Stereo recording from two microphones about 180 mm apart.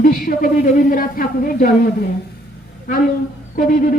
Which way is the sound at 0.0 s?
50° left (ahead or behind).